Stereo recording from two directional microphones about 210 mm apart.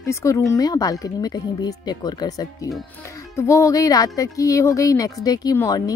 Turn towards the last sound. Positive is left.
turn(degrees=15)  # may be behind; listen again after turning